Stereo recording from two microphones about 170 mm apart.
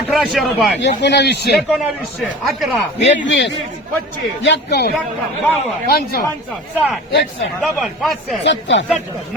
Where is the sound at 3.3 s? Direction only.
90° left.